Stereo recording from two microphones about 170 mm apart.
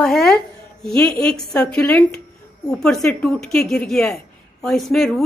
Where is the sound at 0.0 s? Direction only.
5° left (ahead or behind).